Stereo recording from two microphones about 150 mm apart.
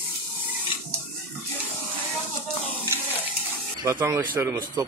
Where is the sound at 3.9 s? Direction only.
20° right (ahead or behind).